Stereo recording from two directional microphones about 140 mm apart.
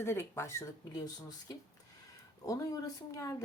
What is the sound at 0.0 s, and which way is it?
Speech, 20° left (ahead or behind).